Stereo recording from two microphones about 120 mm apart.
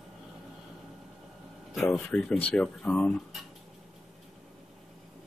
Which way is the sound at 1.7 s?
Centre (ahead or behind).